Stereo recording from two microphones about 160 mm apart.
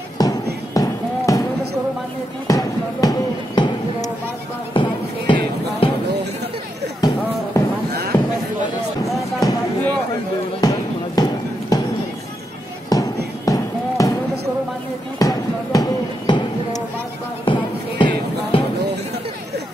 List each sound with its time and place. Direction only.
0.2 s music: 25° left (ahead or behind)
2.4 s basketball bounce: 25° left (ahead or behind)
4.7 s music: 30° left (ahead or behind)
7.0 s music: 25° left (ahead or behind)
8.1 s a sound: 20° left (ahead or behind)
9.4 s music: 25° left (ahead or behind)
10.6 s music: 25° left (ahead or behind)
12.9 s music: 25° left (ahead or behind)
15.1 s a sound: 20° left (ahead or behind)